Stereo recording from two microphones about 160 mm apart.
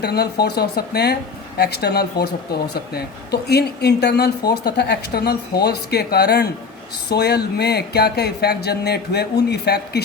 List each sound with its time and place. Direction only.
0.0 s speech: 90° left